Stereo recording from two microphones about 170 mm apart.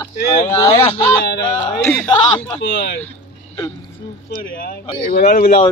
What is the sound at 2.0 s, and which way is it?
Speech, 30° left (ahead or behind).